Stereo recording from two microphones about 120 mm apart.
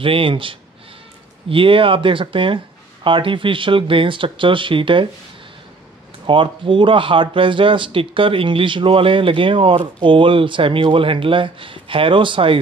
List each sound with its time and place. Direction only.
0.0 s speech: 45° right (ahead or behind)
6.2 s speech: 45° right (ahead or behind)